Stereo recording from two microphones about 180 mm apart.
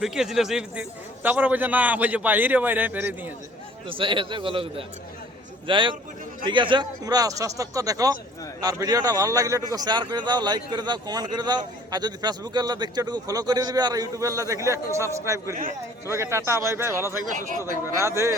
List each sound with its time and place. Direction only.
0.0 s a man's voice: centre (ahead or behind)
3.8 s a man's voice: 30° right (ahead or behind)